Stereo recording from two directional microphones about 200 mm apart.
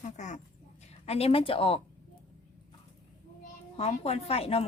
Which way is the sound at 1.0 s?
30° left (ahead or behind).